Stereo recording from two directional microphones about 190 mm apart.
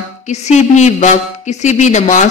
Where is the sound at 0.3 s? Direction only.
35° left (ahead or behind).